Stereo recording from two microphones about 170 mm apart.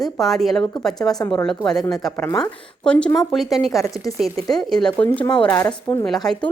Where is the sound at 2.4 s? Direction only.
5° left (ahead or behind); by 6.1 s 20° left (ahead or behind).